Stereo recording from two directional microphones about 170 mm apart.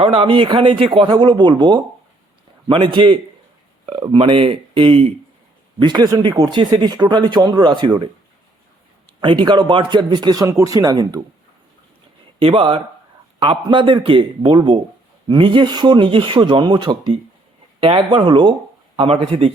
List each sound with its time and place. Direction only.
0.0 s speech: 30° right (ahead or behind)
9.2 s speech: 25° right (ahead or behind)
12.4 s speech: 30° right (ahead or behind)